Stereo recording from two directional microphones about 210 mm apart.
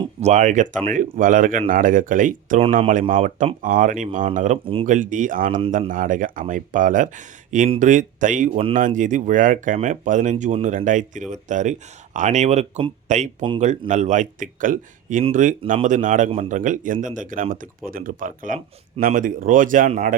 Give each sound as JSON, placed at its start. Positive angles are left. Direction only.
{"t": 0.0, "sound": "speech", "side_deg": -30}
{"t": 4.9, "sound": "speech", "side_deg": -40}